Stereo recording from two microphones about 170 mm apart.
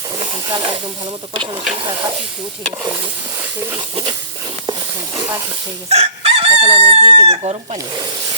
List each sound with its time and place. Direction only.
0.2 s snake: 25° right (ahead or behind)
1.4 s speech: 25° right (ahead or behind)
3.7 s speech: 25° right (ahead or behind)
5.9 s chicken: 35° right (ahead or behind)